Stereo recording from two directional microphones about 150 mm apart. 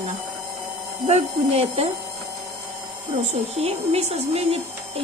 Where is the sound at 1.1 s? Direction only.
40° right (ahead or behind).